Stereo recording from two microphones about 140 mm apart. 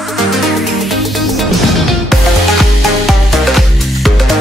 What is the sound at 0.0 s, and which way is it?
Music, centre (ahead or behind).